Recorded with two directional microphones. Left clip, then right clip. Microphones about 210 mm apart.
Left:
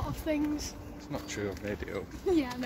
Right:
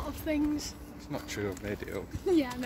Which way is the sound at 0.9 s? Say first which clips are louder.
Right 1 dB; 25° right (ahead or behind).